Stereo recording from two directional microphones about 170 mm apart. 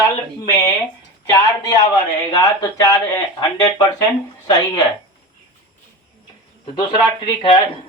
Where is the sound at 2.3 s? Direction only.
20° left (ahead or behind).